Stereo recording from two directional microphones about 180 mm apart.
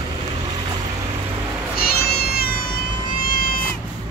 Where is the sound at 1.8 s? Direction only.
60° left (ahead or behind).